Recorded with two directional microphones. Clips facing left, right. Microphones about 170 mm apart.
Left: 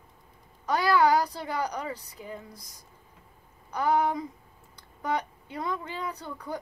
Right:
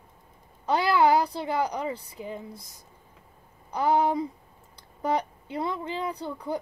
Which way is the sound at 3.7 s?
30° right (ahead or behind).